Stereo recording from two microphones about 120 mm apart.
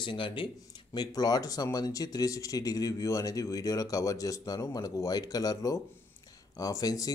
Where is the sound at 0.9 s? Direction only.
35° left (ahead or behind).